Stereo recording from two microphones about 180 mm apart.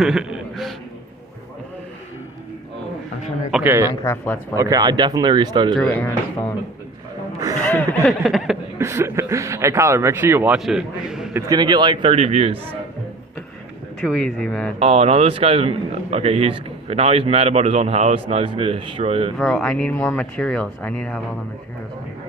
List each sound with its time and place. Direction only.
0.0 s a sound: 5° right (ahead or behind)
3.5 s speech: 15° right (ahead or behind)
4.0 s speech: 10° left (ahead or behind)
4.6 s speech: 20° right (ahead or behind)
5.8 s speech: 10° left (ahead or behind)
7.6 s speech: 10° left (ahead or behind)
8.1 s speech: centre (ahead or behind)
8.7 s speech: 15° right (ahead or behind)
11.3 s speech: 20° right (ahead or behind)
14.0 s speech: 5° left (ahead or behind)
14.8 s a man's voice: 35° right (ahead or behind)
19.3 s speech: 5° left (ahead or behind)